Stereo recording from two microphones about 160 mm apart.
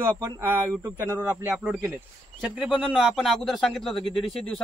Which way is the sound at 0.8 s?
10° right (ahead or behind).